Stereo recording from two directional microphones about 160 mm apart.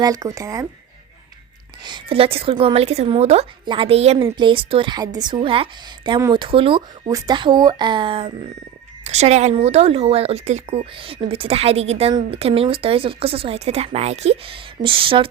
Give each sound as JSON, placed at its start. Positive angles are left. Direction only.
{"t": 0.0, "sound": "speech", "side_deg": -25}
{"t": 1.8, "sound": "speech", "side_deg": -30}
{"t": 6.1, "sound": "speech", "side_deg": -25}
{"t": 9.0, "sound": "speech", "side_deg": -45}
{"t": 10.9, "sound": "speech", "side_deg": -35}